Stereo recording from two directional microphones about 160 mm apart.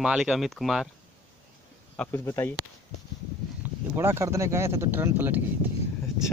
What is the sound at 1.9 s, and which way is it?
Speech, 15° left (ahead or behind).